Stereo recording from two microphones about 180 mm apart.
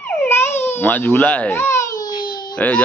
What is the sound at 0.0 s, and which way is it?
Baby cry, 10° left (ahead or behind).